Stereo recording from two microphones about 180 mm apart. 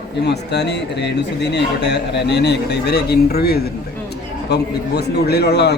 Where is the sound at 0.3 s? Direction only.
70° left (ahead or behind).